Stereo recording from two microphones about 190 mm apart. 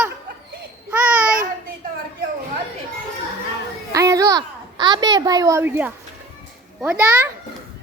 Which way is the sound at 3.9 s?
15° right (ahead or behind).